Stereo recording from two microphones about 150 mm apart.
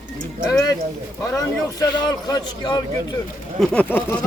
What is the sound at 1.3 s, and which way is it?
A man's voice, 25° left (ahead or behind).